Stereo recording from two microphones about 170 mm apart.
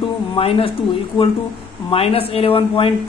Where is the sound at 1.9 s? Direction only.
35° left (ahead or behind).